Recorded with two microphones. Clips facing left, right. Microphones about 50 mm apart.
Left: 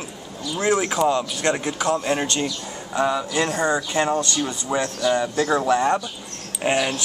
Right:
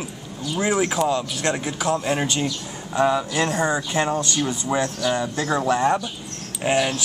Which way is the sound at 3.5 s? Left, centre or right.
Centre.